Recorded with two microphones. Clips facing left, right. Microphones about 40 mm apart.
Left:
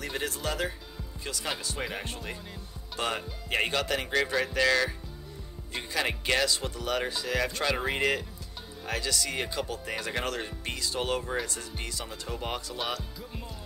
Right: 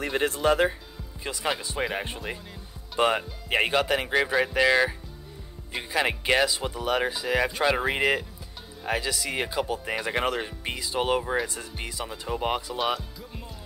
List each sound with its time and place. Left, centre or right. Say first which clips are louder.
0.0 s speech: right 8 dB; right
5.9 s speech: right 5 dB; centre